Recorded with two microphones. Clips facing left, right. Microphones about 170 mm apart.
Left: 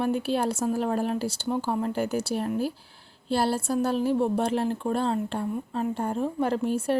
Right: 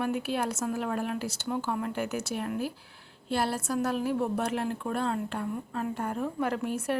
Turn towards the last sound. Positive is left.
turn(degrees=30)  # may be behind; listen again after turning